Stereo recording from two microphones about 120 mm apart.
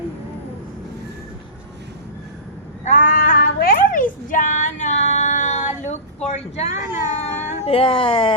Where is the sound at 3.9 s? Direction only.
90° left.